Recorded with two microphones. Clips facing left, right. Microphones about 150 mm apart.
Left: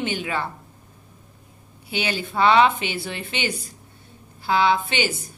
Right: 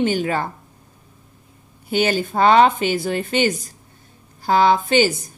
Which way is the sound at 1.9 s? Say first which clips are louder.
Right 7 dB; 45° right (ahead or behind).